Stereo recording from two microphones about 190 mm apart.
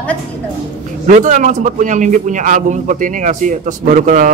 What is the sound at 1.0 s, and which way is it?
A man's voice, 40° right (ahead or behind).